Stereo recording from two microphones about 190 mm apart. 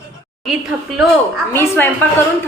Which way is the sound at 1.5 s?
10° left (ahead or behind).